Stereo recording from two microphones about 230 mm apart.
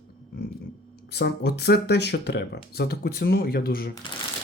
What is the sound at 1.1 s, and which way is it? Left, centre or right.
Speech, left.